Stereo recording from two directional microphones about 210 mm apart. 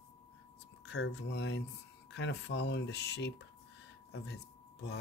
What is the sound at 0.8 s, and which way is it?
Speech, 55° left (ahead or behind).